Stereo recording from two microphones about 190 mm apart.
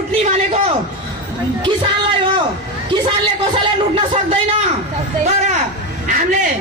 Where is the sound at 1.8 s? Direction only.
25° right (ahead or behind).